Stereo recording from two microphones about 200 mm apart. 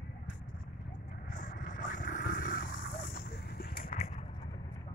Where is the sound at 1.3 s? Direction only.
40° left (ahead or behind).